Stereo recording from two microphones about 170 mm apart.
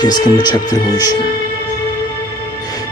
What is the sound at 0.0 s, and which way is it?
Speech, 25° left (ahead or behind).